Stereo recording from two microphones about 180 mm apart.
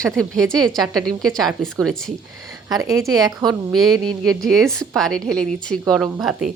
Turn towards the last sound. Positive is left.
turn(degrees=0)  # may be behind; listen again after turning